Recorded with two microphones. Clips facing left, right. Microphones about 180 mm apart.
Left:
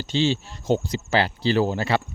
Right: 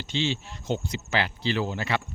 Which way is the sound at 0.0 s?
35° left (ahead or behind).